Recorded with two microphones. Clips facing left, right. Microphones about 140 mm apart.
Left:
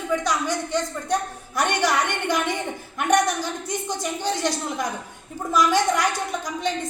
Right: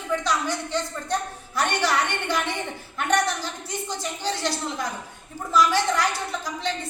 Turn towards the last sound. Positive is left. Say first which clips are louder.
# left 3 dB
turn(degrees=15)  # may be behind; listen again after turning